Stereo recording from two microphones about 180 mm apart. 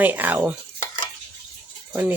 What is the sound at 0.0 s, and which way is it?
Speech, 10° right (ahead or behind).